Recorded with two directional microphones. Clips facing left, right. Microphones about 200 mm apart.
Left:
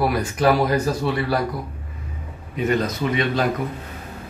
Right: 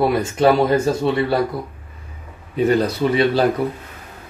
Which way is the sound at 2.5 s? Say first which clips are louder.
Right 5 dB; 35° right (ahead or behind).